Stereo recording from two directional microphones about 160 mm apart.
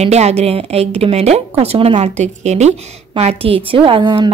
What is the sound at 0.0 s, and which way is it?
A woman's voice, 40° right (ahead or behind).